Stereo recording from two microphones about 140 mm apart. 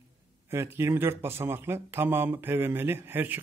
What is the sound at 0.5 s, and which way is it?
Speech, 20° right (ahead or behind).